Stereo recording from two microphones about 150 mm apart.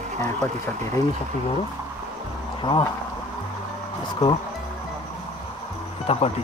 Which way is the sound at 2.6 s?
35° left (ahead or behind).